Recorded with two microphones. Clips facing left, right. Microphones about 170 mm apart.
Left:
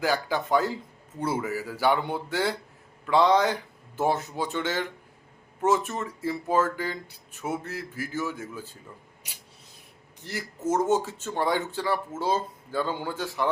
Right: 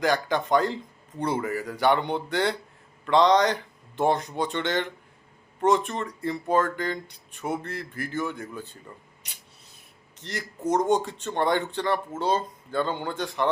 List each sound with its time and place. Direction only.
0.0 s speech: 10° left (ahead or behind)
10.2 s speech: 10° left (ahead or behind)